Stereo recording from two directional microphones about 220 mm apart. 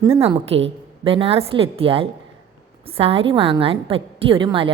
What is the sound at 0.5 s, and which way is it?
Speech, 25° right (ahead or behind).